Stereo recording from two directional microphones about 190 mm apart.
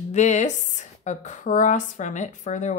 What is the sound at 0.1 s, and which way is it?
Speech, 40° left (ahead or behind).